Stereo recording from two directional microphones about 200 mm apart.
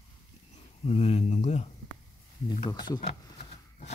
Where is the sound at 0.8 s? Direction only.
30° left (ahead or behind).